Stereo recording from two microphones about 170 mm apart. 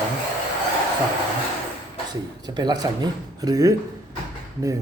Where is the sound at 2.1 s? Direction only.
25° right (ahead or behind).